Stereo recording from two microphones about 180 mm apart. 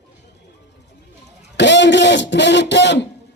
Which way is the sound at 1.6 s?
80° left.